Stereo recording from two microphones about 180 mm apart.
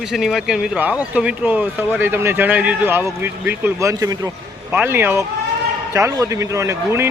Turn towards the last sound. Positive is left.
turn(degrees=-15)  # may be behind; listen again after turning